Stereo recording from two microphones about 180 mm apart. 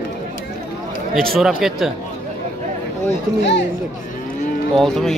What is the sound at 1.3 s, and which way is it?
Speech, centre (ahead or behind).